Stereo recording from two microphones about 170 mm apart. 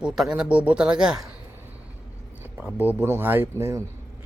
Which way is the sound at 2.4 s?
10° right (ahead or behind).